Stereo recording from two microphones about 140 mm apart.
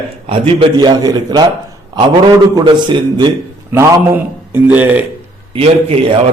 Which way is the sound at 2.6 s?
30° right (ahead or behind).